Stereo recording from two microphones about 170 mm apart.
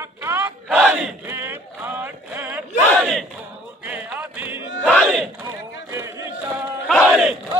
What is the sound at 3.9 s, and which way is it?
Music, 10° right (ahead or behind).